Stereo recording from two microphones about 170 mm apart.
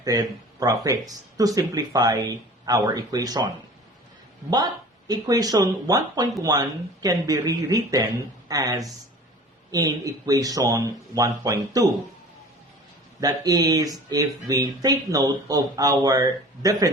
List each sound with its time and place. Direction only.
0.0 s speech: 20° right (ahead or behind)
4.5 s speech: 25° right (ahead or behind)
13.1 s speech: 20° right (ahead or behind)